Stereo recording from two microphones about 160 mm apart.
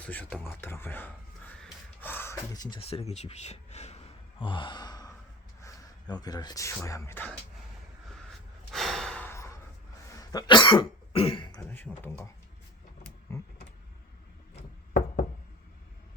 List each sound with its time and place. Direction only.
0.0 s speech: 10° left (ahead or behind)
1.6 s gasp: 10° left (ahead or behind)
5.6 s speech: 25° left (ahead or behind)
8.7 s gasp: centre (ahead or behind)
10.2 s cough: 25° left (ahead or behind)
11.7 s speech: 15° left (ahead or behind)
13.3 s a sound: 20° left (ahead or behind)